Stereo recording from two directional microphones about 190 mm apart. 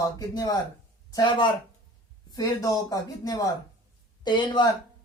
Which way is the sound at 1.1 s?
25° left (ahead or behind).